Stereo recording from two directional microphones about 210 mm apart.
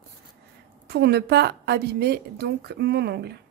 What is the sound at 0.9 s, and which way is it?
Speech, 50° right (ahead or behind).